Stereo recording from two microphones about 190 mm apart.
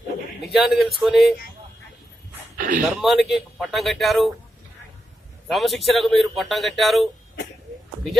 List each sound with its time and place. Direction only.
0.5 s speech: centre (ahead or behind)
2.6 s speech: 45° right (ahead or behind)
3.0 s speech: centre (ahead or behind)
5.5 s speech: centre (ahead or behind)